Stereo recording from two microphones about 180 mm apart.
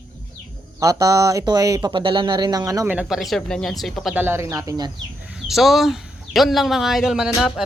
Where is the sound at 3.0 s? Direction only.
Centre (ahead or behind); by 4.9 s 20° right (ahead or behind).